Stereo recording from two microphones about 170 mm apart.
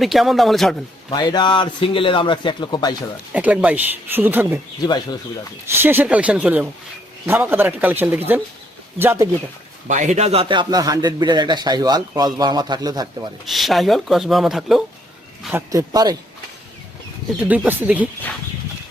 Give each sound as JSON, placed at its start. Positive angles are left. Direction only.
{"t": 0.0, "sound": "speech", "side_deg": 0}
{"t": 1.1, "sound": "speech", "side_deg": 25}
{"t": 3.3, "sound": "speech", "side_deg": -10}
{"t": 5.7, "sound": "speech", "side_deg": -10}
{"t": 9.8, "sound": "a man's voice", "side_deg": -45}
{"t": 13.4, "sound": "speech", "side_deg": 0}
{"t": 15.5, "sound": "a man's voice", "side_deg": -15}
{"t": 17.4, "sound": "speech", "side_deg": -5}